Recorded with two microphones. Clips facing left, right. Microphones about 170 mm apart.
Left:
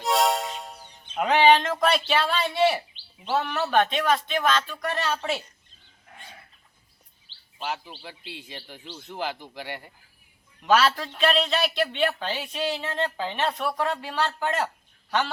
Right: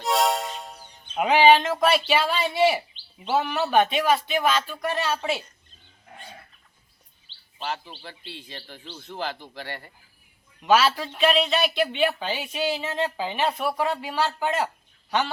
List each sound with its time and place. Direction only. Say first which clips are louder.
0.0 s music: even; centre (ahead or behind)
1.1 s speech: right 2 dB; 10° right (ahead or behind)
7.3 s bird vocalization: right 1 dB; 50° left (ahead or behind)
7.6 s a man's voice: even; 10° left (ahead or behind)
10.6 s speech: right 1 dB; 5° right (ahead or behind)